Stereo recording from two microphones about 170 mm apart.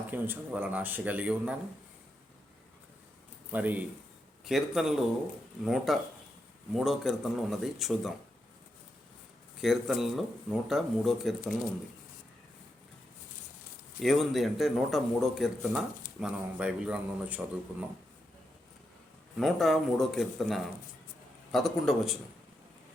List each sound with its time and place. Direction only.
0.1 s a man's voice: 10° right (ahead or behind)
3.5 s a man's voice: 10° right (ahead or behind)
9.6 s speech: centre (ahead or behind)
14.0 s a man's voice: centre (ahead or behind)
19.4 s speech: centre (ahead or behind)